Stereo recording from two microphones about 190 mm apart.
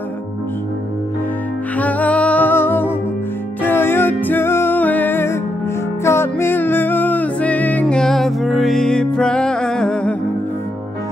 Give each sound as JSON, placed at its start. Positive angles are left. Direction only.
{"t": 1.8, "sound": "music", "side_deg": 10}